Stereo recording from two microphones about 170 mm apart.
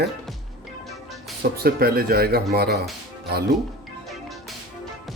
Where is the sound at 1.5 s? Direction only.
65° right (ahead or behind).